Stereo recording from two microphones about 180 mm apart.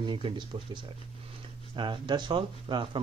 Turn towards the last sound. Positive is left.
turn(degrees=-25)  # may be behind; listen again after turning